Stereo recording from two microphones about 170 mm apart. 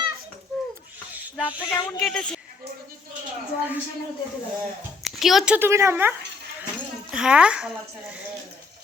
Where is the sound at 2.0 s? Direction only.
5° left (ahead or behind).